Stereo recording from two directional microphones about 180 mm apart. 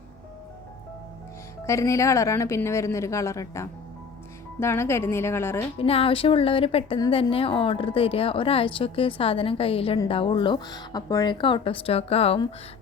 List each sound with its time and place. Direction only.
1.6 s a woman's voice: 15° left (ahead or behind)
5.8 s a woman's voice: 30° left (ahead or behind)